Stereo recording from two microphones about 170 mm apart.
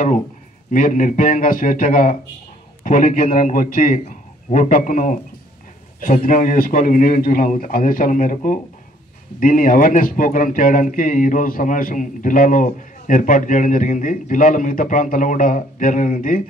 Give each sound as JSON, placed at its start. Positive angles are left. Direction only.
{"t": 0.7, "sound": "speech", "side_deg": 50}